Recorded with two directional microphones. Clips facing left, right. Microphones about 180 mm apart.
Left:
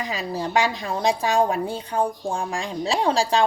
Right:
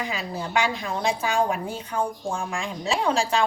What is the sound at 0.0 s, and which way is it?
A woman's voice, 35° left (ahead or behind).